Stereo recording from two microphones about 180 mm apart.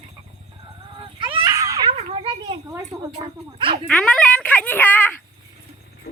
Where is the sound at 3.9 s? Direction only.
5° left (ahead or behind).